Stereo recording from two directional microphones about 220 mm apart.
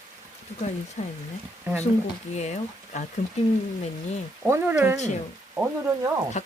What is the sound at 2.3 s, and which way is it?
Speech, 30° left (ahead or behind).